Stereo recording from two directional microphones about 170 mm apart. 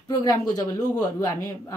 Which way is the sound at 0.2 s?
20° left (ahead or behind).